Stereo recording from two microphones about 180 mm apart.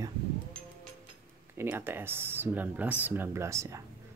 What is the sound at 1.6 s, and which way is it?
Speech, 15° right (ahead or behind).